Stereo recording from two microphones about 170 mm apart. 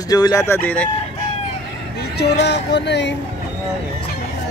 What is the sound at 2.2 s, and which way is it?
Speech, 80° left.